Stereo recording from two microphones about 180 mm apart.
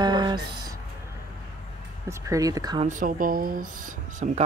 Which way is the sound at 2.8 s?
50° right (ahead or behind).